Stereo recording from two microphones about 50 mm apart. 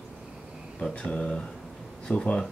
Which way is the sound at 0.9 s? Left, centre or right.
Left.